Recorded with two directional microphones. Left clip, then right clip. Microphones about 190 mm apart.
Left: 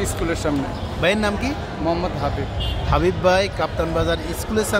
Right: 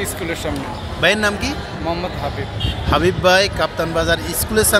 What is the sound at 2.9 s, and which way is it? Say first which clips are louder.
A man's voice: right 3 dB; 5° right (ahead or behind).